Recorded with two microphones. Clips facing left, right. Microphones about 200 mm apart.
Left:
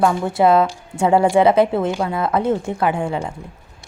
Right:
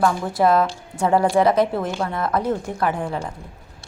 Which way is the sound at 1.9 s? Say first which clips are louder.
Left 4 dB; 10° left (ahead or behind).